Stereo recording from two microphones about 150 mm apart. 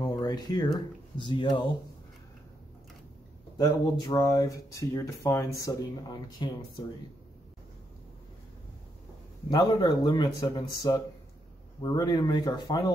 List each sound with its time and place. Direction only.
0.0 s a sound: 25° left (ahead or behind)
0.7 s speech: 30° left (ahead or behind)
3.5 s speech: 25° left (ahead or behind)
9.5 s speech: 30° left (ahead or behind)